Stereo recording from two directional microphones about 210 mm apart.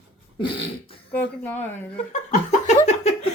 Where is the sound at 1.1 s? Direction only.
10° left (ahead or behind).